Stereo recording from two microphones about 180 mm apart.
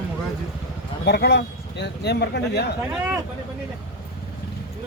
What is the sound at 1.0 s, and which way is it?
Speech, 65° left (ahead or behind).